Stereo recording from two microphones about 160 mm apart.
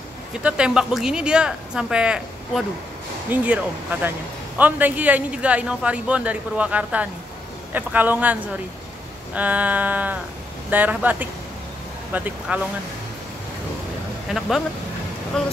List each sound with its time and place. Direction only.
0.4 s speech: 5° right (ahead or behind)
15.3 s speech: 5° left (ahead or behind)